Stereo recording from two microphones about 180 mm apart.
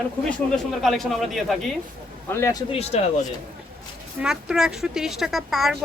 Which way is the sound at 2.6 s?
35° left (ahead or behind).